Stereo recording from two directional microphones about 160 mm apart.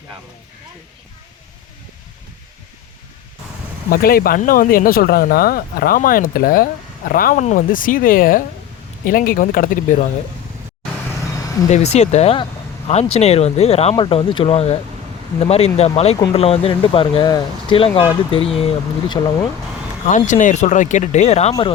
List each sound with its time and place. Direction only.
3.8 s speech: 65° left (ahead or behind)
11.7 s speech: 45° left (ahead or behind)
19.2 s speech: 20° left (ahead or behind)
20.1 s speech: 50° left (ahead or behind)